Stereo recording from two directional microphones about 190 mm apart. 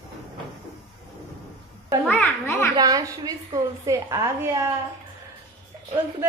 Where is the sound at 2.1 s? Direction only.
10° left (ahead or behind).